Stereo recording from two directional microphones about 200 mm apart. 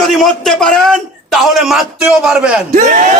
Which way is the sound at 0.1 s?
Centre (ahead or behind).